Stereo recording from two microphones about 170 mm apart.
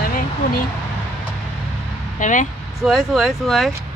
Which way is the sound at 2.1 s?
45° left (ahead or behind).